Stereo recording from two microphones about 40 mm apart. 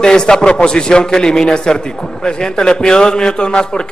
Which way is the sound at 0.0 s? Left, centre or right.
Centre.